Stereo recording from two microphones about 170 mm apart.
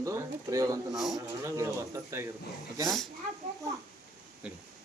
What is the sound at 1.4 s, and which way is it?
Speech, 15° right (ahead or behind).